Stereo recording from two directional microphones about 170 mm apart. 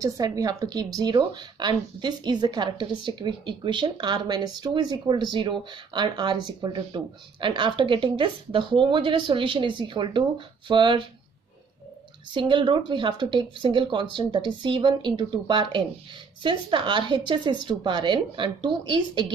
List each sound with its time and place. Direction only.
0.0 s a woman's voice: 20° right (ahead or behind)
12.4 s a woman's voice: 30° right (ahead or behind)